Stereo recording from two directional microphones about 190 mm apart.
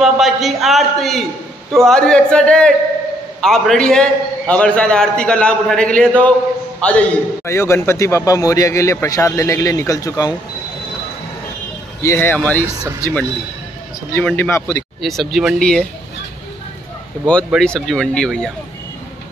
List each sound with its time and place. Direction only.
0.0 s a man's voice: centre (ahead or behind); by 10.3 s 20° left (ahead or behind)
12.0 s a man's voice: 15° left (ahead or behind)
14.1 s a man's voice: 10° left (ahead or behind)
15.0 s a man's voice: centre (ahead or behind)
17.5 s a man's voice: centre (ahead or behind)